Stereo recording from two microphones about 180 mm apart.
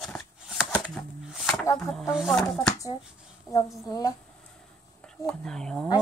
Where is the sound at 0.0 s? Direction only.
5° left (ahead or behind).